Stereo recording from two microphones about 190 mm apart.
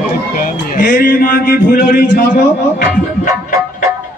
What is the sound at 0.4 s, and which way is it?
Speech, 45° left (ahead or behind).